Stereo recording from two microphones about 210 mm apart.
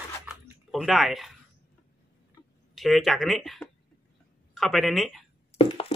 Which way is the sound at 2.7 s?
Centre (ahead or behind).